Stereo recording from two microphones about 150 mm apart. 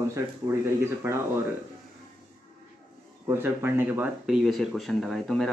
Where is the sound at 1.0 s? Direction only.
15° right (ahead or behind).